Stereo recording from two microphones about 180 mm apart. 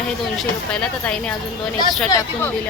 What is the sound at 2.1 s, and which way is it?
Speech, 15° left (ahead or behind).